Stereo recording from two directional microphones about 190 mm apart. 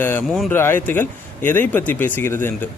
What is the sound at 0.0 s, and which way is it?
Speech, 10° left (ahead or behind).